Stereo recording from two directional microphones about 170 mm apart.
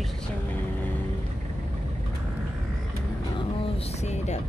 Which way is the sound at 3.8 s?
40° left (ahead or behind).